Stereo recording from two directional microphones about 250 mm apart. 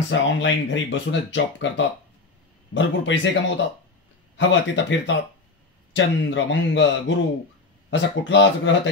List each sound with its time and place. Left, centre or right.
0.1 s speech: left